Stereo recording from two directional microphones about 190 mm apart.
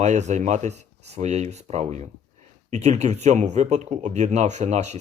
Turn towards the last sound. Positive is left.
turn(degrees=-35)  # may be behind; listen again after turning